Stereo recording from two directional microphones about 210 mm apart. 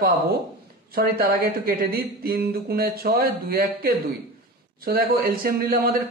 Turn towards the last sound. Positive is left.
turn(degrees=-45)  # may be behind; listen again after turning